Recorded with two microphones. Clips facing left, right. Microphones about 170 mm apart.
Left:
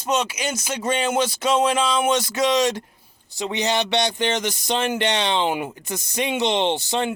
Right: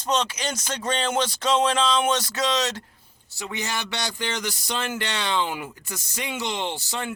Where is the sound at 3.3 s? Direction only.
20° left (ahead or behind).